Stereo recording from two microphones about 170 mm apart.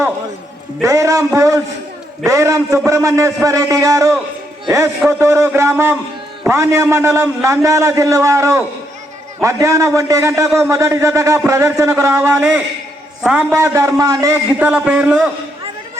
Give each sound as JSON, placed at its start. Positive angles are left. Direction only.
{"t": 0.8, "sound": "a man's voice", "side_deg": -20}
{"t": 14.7, "sound": "a man's voice", "side_deg": -5}